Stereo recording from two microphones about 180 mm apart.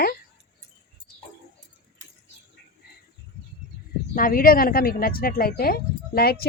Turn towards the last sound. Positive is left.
turn(degrees=60)  # may be behind; listen again after turning